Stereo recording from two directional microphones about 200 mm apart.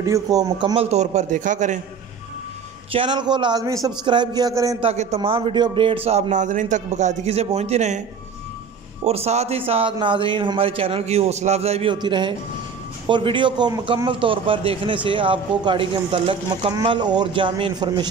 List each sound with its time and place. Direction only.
0.0 s a man's voice: 15° right (ahead or behind); by 1.8 s 40° right (ahead or behind)
2.9 s a man's voice: 25° right (ahead or behind)
4.8 s a man's voice: 30° right (ahead or behind)
9.0 s a man's voice: 30° right (ahead or behind)